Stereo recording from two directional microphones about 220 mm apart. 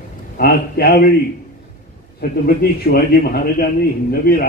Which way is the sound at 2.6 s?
45° left (ahead or behind).